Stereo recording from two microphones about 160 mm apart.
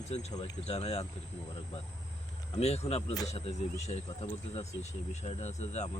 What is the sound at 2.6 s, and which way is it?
Speech, 40° left (ahead or behind).